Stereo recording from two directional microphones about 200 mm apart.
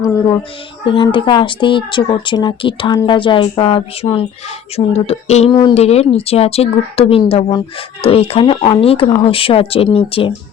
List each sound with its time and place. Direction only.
0.9 s speech: 25° left (ahead or behind)